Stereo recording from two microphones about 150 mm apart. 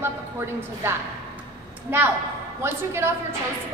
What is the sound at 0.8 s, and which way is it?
Speech, 15° right (ahead or behind).